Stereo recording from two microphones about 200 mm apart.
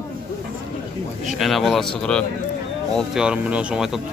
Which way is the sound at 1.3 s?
Centre (ahead or behind).